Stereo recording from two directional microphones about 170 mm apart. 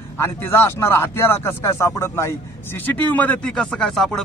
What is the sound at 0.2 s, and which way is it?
Speech, 15° left (ahead or behind).